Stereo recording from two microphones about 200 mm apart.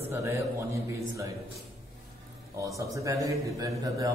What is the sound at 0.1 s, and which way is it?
A man's voice, 15° right (ahead or behind).